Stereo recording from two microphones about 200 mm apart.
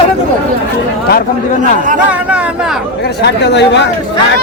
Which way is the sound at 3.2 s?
60° left (ahead or behind).